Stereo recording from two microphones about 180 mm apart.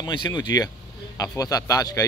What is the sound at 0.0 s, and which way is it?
Speech, 25° left (ahead or behind).